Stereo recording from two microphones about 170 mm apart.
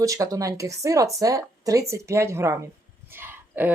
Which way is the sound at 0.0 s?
20° right (ahead or behind).